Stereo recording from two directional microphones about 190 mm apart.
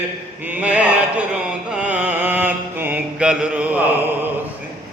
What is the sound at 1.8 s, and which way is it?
Mantra, 10° right (ahead or behind).